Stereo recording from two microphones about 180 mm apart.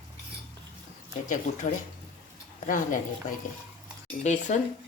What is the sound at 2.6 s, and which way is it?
A woman's voice, 45° left (ahead or behind).